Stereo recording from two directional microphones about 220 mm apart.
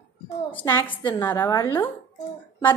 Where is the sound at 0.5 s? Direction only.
10° left (ahead or behind).